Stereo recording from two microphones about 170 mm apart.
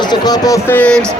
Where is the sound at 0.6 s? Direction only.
10° left (ahead or behind).